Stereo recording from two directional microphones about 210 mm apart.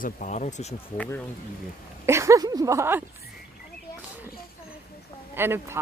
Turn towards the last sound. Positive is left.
turn(degrees=-10)  # may be behind; listen again after turning